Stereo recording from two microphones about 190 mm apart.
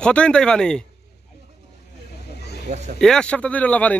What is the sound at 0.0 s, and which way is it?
Speech, 5° left (ahead or behind).